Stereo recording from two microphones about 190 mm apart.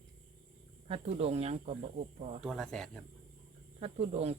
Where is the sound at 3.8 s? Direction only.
35° right (ahead or behind).